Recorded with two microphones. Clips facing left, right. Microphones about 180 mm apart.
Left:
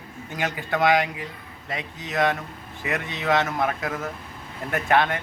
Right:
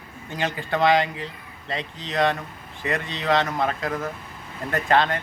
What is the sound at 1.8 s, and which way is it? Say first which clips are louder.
A man's voice: right 1 dB; 5° left (ahead or behind).